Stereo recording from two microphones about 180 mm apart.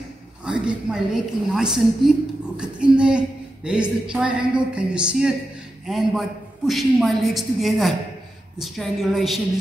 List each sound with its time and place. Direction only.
0.5 s a woman's voice: 5° right (ahead or behind)